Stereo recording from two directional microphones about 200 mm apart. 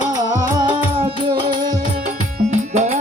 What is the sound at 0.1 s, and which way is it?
Music, 20° right (ahead or behind).